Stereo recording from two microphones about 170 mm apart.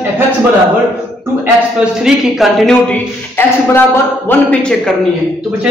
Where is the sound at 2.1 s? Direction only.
Centre (ahead or behind).